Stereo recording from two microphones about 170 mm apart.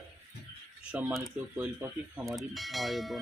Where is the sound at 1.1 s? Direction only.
Centre (ahead or behind).